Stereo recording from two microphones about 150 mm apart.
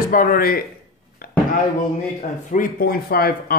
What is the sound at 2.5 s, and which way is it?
Speech, 70° left (ahead or behind).